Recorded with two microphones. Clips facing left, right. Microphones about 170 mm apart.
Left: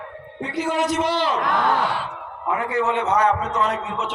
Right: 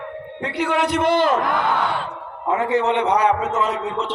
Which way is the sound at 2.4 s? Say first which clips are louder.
Right 3 dB; 25° right (ahead or behind).